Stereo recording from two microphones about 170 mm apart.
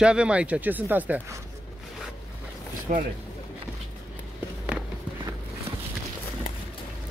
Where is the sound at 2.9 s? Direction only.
55° right (ahead or behind).